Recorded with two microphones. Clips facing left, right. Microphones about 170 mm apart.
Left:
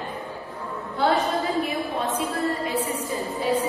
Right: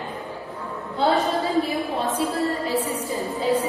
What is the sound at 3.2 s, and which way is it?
Speech, 20° right (ahead or behind).